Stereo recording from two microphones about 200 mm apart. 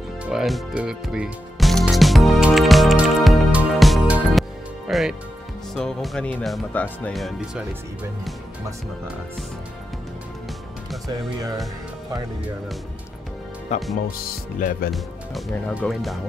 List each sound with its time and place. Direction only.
0.2 s music: 5° right (ahead or behind)
5.8 s speech: centre (ahead or behind)
13.7 s speech: 35° left (ahead or behind)
14.9 s speech: centre (ahead or behind)